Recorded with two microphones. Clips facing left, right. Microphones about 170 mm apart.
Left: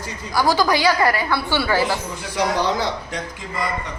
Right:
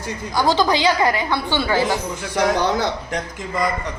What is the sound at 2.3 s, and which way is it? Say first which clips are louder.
Speech: right 2 dB; 50° right (ahead or behind).